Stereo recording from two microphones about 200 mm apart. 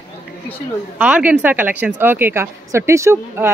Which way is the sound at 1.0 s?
5° right (ahead or behind).